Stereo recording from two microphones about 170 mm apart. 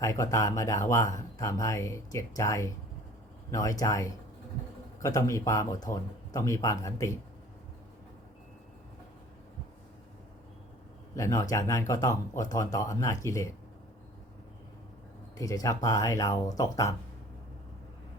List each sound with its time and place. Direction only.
0.0 s speech: 20° left (ahead or behind)
11.1 s speech: 20° left (ahead or behind)
15.4 s speech: 20° left (ahead or behind)